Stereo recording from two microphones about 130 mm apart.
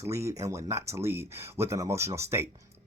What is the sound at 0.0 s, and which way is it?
Speech, 20° right (ahead or behind).